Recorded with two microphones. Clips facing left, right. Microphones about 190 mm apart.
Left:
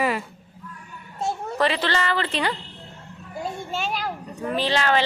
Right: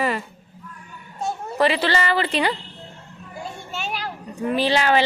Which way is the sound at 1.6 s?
10° right (ahead or behind).